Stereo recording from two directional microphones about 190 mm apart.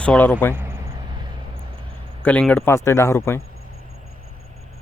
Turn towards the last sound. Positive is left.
turn(degrees=15)  # may be behind; listen again after turning